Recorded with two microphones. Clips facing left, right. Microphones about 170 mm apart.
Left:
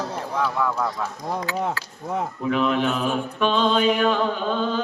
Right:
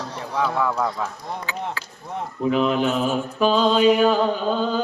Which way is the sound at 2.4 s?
35° right (ahead or behind).